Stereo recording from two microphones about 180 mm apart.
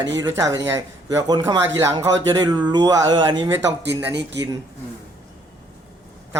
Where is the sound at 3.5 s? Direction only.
80° right.